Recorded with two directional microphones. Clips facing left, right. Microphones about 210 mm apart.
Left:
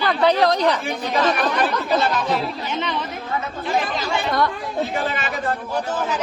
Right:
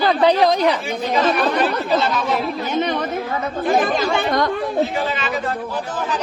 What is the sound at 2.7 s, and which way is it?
Speech, 45° right (ahead or behind).